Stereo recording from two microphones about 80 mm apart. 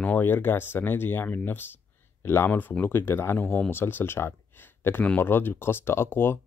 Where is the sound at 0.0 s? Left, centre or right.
Left.